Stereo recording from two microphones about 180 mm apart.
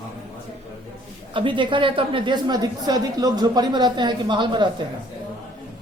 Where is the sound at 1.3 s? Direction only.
25° right (ahead or behind).